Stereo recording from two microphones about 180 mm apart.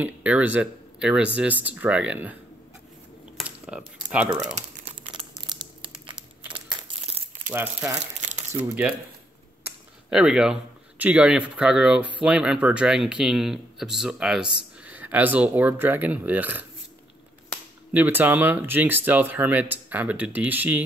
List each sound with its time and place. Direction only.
0.0 s speech: 10° right (ahead or behind)
3.3 s typing: 5° right (ahead or behind)
5.1 s crumpling: 25° right (ahead or behind)
7.4 s speech: 15° right (ahead or behind)
8.2 s crumpling: 40° right (ahead or behind)
8.5 s speech: 5° right (ahead or behind)
17.9 s speech: 10° right (ahead or behind)